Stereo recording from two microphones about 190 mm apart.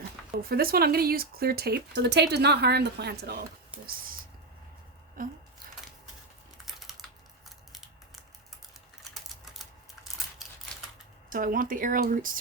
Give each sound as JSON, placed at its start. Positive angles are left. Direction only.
{"t": 0.4, "sound": "speech", "side_deg": -50}
{"t": 5.2, "sound": "speech", "side_deg": -45}
{"t": 6.7, "sound": "typing", "side_deg": 0}
{"t": 9.4, "sound": "typing", "side_deg": 0}
{"t": 11.3, "sound": "speech", "side_deg": -45}